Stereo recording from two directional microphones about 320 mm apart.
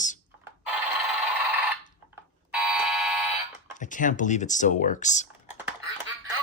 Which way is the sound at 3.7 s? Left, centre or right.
Left.